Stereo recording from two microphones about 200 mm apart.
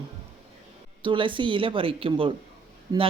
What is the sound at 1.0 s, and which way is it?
Speech, 25° right (ahead or behind).